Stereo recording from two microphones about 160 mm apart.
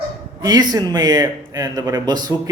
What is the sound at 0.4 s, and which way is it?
A man's voice, 25° right (ahead or behind).